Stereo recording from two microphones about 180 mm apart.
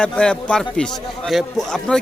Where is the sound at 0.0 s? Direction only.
5° left (ahead or behind).